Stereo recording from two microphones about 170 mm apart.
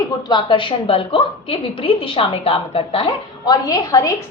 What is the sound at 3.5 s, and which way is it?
Speech, 20° left (ahead or behind).